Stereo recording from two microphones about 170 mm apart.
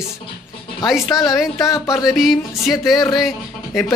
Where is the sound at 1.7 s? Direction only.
20° left (ahead or behind).